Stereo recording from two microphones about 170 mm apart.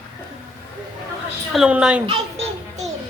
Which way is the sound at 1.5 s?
5° right (ahead or behind).